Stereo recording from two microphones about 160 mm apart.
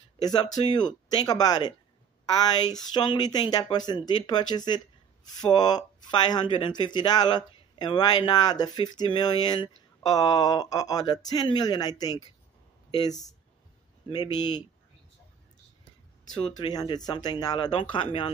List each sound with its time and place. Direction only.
0.2 s speech: 25° left (ahead or behind)
16.4 s speech: 25° left (ahead or behind)